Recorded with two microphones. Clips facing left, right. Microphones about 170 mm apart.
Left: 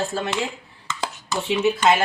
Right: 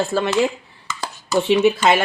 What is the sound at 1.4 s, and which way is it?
Speech, 70° right (ahead or behind).